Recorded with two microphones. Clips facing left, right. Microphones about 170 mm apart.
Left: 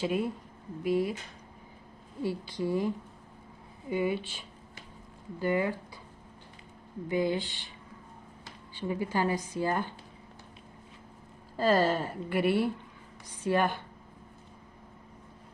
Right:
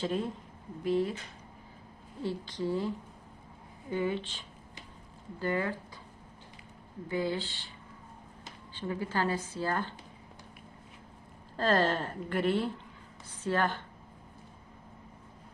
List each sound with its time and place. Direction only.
0.0 s a woman's voice: 10° left (ahead or behind)
2.2 s a woman's voice: 10° left (ahead or behind)
7.1 s a woman's voice: 15° left (ahead or behind)
8.7 s a woman's voice: 15° left (ahead or behind)
11.5 s a woman's voice: 10° left (ahead or behind)